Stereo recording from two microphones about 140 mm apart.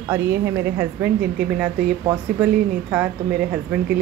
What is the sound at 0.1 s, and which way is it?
Speech, 15° right (ahead or behind).